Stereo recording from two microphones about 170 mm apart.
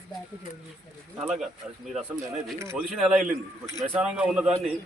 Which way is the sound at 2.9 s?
5° right (ahead or behind).